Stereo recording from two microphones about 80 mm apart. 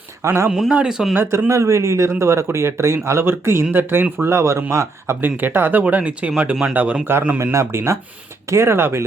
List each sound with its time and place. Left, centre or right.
0.2 s speech: right
0.7 s speech: centre
1.1 s speech: right
1.5 s speech: right
5.2 s speech: right
7.1 s speech: right